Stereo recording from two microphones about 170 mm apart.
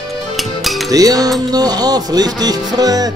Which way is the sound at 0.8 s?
20° right (ahead or behind).